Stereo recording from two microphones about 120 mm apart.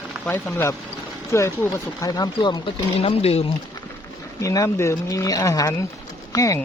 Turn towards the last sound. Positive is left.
turn(degrees=30)  # may be behind; listen again after turning